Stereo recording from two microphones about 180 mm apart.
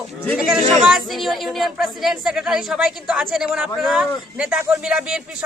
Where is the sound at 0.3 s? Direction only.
Centre (ahead or behind).